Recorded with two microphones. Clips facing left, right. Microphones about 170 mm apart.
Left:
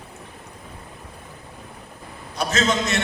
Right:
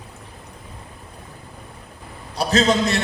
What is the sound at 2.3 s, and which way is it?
Speech, 35° right (ahead or behind).